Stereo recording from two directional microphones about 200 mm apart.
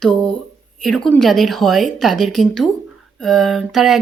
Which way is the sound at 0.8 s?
Centre (ahead or behind).